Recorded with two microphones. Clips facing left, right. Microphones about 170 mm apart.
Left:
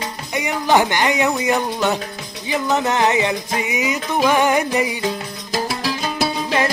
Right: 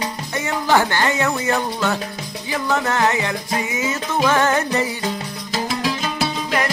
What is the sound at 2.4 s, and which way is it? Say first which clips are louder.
Music: left 2 dB; 20° left (ahead or behind).